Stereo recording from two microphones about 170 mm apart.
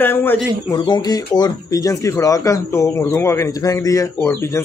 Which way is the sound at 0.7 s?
25° left (ahead or behind).